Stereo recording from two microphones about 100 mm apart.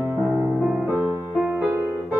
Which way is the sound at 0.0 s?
20° right (ahead or behind).